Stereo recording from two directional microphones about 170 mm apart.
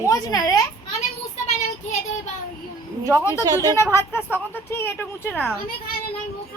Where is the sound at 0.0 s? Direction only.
20° left (ahead or behind).